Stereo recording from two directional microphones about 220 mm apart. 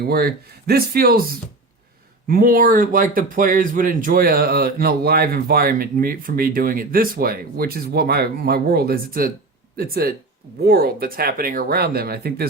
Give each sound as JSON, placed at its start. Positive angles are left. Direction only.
{"t": 0.0, "sound": "speech", "side_deg": -45}